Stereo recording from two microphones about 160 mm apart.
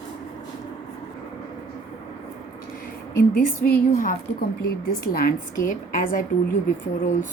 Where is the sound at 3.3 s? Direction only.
60° left (ahead or behind).